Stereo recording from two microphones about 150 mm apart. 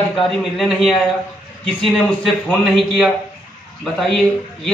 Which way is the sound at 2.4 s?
Centre (ahead or behind).